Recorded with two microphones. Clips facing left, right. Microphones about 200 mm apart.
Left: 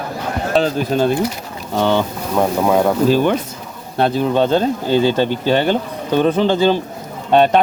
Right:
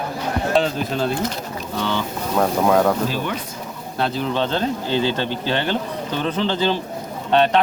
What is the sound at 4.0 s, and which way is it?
Speech, 50° left (ahead or behind).